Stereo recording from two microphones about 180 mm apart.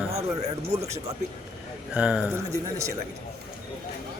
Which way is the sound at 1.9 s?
5° right (ahead or behind).